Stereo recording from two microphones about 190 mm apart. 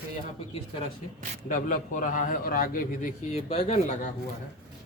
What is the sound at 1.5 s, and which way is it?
A man's voice, 45° left (ahead or behind).